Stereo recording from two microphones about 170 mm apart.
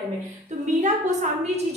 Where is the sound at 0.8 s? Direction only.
45° right (ahead or behind).